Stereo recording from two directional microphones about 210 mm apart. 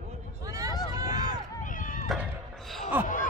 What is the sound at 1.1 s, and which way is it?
Run, 40° left (ahead or behind).